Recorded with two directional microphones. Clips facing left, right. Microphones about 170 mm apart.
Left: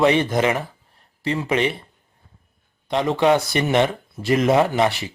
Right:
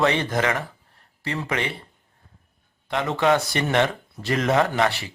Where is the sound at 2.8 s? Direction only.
15° left (ahead or behind).